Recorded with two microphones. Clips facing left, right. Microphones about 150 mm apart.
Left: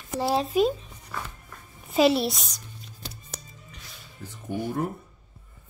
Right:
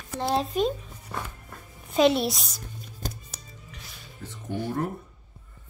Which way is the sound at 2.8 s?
50° right (ahead or behind).